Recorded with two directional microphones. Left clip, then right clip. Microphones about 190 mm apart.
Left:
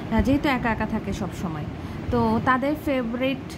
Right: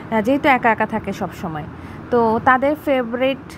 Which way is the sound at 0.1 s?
20° right (ahead or behind).